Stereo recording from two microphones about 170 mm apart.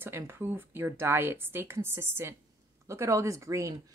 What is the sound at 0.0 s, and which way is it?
A woman's voice, 15° right (ahead or behind).